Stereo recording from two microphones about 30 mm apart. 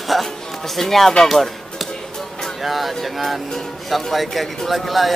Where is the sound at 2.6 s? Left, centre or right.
Centre.